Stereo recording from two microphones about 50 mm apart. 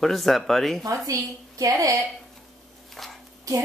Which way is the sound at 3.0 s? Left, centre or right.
Centre.